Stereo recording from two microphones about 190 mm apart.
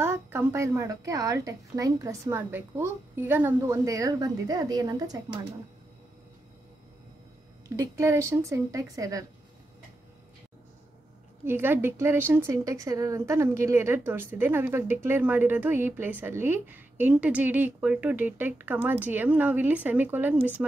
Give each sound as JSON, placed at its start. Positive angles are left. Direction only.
{"t": 0.0, "sound": "a woman's voice", "side_deg": -15}
{"t": 7.6, "sound": "a woman's voice", "side_deg": -15}
{"t": 11.4, "sound": "a woman's voice", "side_deg": -10}